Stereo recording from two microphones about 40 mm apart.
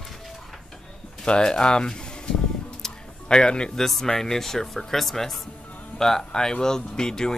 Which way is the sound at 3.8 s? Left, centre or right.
Centre.